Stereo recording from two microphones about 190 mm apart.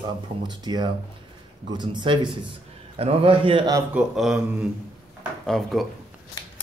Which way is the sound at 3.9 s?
5° right (ahead or behind).